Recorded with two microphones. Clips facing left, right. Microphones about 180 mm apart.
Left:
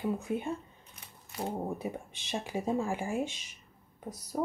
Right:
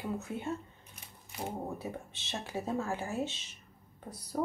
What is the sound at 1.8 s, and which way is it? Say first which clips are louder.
Speech: left 3 dB; 15° left (ahead or behind).